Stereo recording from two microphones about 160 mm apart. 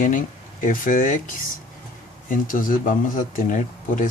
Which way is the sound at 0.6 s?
55° left (ahead or behind).